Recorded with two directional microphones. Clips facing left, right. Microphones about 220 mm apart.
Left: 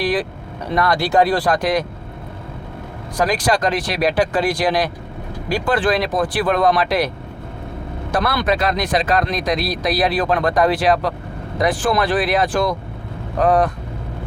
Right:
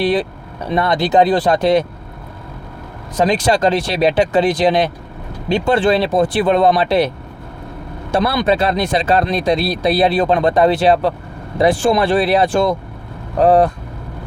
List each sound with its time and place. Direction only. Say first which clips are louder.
0.0 s speech: right 4 dB; 25° right (ahead or behind)
3.2 s speech: right 4 dB; 25° right (ahead or behind)
8.1 s speech: right 4 dB; 25° right (ahead or behind)